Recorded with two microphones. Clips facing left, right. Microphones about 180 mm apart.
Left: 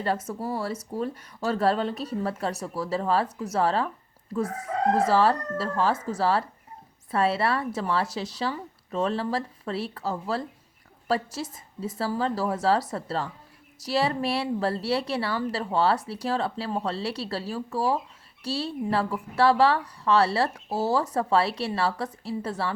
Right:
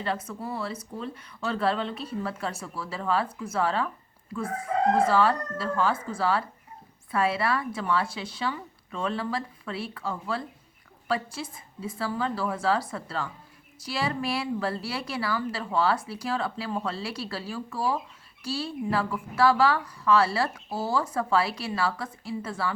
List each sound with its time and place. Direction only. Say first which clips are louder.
0.0 s speech: left 3 dB; 40° left (ahead or behind)